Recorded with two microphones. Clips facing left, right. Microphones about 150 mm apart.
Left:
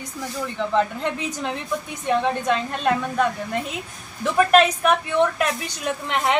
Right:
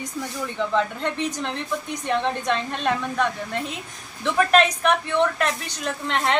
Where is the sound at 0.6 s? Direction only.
5° left (ahead or behind).